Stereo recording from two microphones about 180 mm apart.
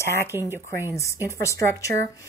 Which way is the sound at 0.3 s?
15° right (ahead or behind).